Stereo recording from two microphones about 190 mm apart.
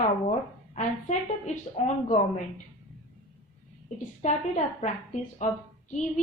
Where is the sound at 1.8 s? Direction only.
35° left (ahead or behind).